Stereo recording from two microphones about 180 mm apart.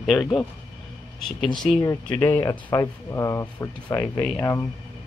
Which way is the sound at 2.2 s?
10° left (ahead or behind).